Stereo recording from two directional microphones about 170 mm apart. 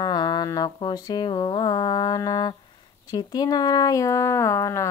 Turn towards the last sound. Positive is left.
turn(degrees=15)  # may be behind; listen again after turning